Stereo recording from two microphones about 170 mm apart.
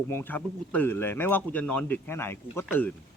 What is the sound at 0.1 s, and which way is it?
Speech, 10° left (ahead or behind).